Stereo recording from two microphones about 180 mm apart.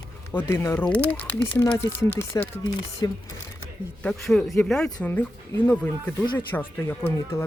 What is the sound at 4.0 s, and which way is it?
A man's voice, 5° left (ahead or behind).